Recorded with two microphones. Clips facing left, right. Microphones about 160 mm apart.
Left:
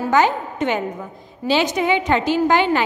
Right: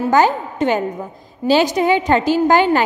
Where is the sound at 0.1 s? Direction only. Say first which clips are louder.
Right 2 dB; 40° right (ahead or behind).